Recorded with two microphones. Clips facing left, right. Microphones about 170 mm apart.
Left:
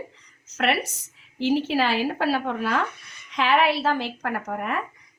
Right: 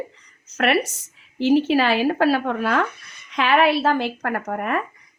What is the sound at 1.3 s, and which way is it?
A woman's voice, 60° right (ahead or behind).